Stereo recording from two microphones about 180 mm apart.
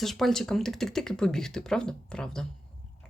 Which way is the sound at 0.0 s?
Centre (ahead or behind).